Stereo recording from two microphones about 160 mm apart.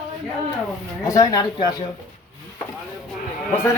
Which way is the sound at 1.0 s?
20° left (ahead or behind).